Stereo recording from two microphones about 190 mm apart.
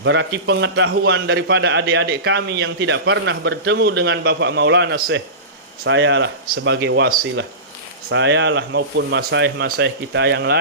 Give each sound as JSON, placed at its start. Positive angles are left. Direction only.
{"t": 0.0, "sound": "a man's voice", "side_deg": -70}
{"t": 5.8, "sound": "a man's voice", "side_deg": -70}